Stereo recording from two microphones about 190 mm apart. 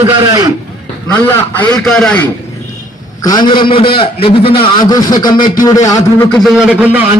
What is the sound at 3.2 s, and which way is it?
Speech, 25° left (ahead or behind).